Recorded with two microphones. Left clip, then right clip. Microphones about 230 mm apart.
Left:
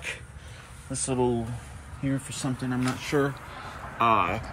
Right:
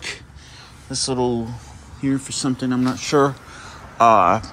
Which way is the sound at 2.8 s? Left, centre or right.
Centre.